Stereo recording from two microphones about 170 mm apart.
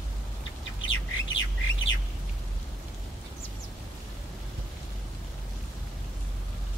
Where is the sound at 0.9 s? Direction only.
90° left.